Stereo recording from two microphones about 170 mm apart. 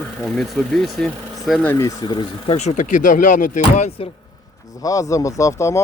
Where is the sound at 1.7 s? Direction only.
15° left (ahead or behind).